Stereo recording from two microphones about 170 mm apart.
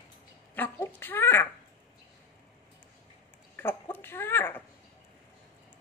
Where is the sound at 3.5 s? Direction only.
10° left (ahead or behind).